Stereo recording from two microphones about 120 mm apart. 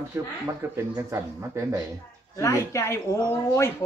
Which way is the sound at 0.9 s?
25° right (ahead or behind).